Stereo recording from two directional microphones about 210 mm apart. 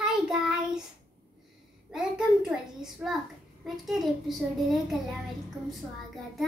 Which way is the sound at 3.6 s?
Centre (ahead or behind).